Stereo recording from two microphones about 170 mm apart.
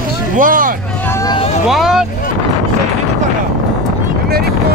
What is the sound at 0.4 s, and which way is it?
Speech, 55° right (ahead or behind).